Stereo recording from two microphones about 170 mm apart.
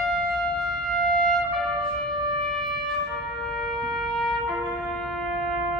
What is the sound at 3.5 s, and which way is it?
Trumpet, centre (ahead or behind).